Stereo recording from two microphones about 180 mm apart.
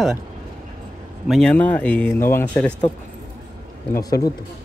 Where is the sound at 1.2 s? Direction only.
Centre (ahead or behind).